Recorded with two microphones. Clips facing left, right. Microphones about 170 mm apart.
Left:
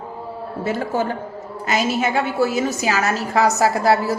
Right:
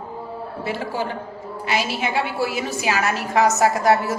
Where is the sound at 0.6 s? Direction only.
45° left (ahead or behind).